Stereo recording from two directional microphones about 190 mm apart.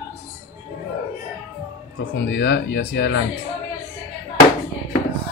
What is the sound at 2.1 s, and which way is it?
Speech, 65° left (ahead or behind).